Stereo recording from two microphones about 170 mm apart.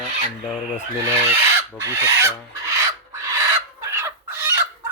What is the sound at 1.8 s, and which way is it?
Filing, 15° right (ahead or behind).